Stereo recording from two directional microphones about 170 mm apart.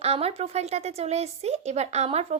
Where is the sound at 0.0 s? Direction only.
35° right (ahead or behind).